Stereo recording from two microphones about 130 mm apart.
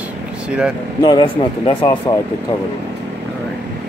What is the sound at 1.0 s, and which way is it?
Speech, 35° left (ahead or behind).